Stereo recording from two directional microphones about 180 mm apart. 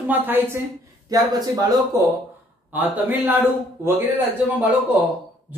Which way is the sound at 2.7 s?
10° right (ahead or behind).